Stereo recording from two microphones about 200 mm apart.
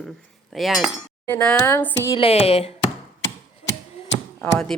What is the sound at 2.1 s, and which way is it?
Speech, 30° left (ahead or behind).